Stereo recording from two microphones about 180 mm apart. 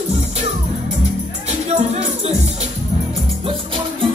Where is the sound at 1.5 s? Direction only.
35° right (ahead or behind).